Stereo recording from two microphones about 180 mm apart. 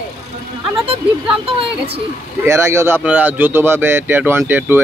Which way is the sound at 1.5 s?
30° right (ahead or behind).